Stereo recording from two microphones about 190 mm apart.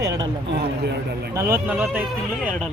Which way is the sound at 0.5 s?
60° right (ahead or behind).